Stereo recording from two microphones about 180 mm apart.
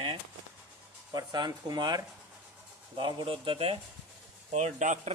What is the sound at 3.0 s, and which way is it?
A man's voice, 25° right (ahead or behind).